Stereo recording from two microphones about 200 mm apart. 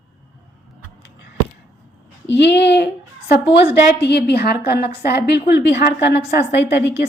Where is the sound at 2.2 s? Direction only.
60° left (ahead or behind).